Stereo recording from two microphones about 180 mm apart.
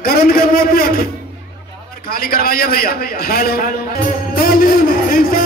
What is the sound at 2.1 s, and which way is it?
A man's voice, 55° left (ahead or behind).